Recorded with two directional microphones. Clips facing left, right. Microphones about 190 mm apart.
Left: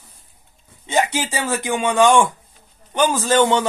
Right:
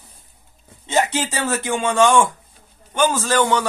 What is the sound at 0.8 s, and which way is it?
A man's voice, 10° left (ahead or behind).